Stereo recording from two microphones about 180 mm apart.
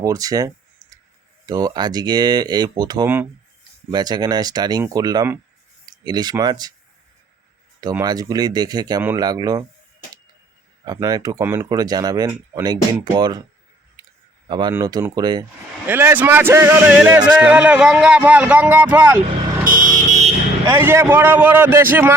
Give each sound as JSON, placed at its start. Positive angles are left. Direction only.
{"t": 0.0, "sound": "clicking", "side_deg": -20}
{"t": 1.5, "sound": "speech", "side_deg": -20}
{"t": 7.8, "sound": "speech", "side_deg": -20}
{"t": 10.8, "sound": "speech", "side_deg": -20}
{"t": 14.0, "sound": "clicking", "side_deg": -20}
{"t": 14.7, "sound": "speech", "side_deg": -20}
{"t": 15.9, "sound": "speech", "side_deg": -10}
{"t": 19.6, "sound": "vehicle", "side_deg": -45}
{"t": 20.7, "sound": "speech", "side_deg": -15}